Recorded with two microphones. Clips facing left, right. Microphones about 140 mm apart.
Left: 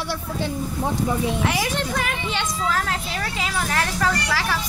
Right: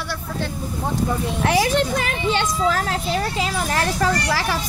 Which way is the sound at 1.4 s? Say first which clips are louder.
Right 5 dB; 35° right (ahead or behind).